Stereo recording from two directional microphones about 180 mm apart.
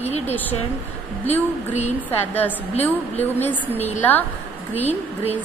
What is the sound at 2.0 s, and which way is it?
A woman's voice, 10° left (ahead or behind).